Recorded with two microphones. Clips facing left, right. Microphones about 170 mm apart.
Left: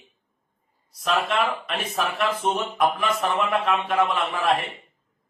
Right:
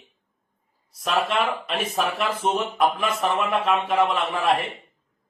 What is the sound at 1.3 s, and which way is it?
Speech, 30° right (ahead or behind).